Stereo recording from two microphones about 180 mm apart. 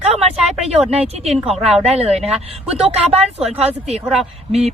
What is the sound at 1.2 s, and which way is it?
Speech, 35° right (ahead or behind).